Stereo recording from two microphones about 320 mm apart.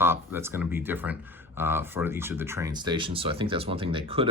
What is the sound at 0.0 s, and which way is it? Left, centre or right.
Speech, centre.